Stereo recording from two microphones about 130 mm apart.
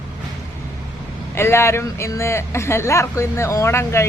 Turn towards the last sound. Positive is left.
turn(degrees=20)  # may be behind; listen again after turning